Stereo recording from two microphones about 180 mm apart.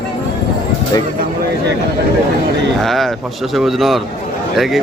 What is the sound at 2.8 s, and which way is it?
Speech, centre (ahead or behind).